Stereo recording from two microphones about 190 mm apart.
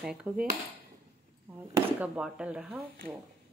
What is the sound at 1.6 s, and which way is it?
Speech, 10° right (ahead or behind).